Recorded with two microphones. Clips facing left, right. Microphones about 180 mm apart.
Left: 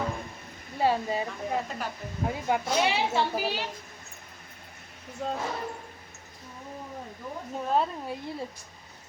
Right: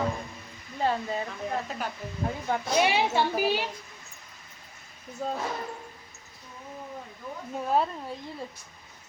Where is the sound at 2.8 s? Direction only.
15° right (ahead or behind).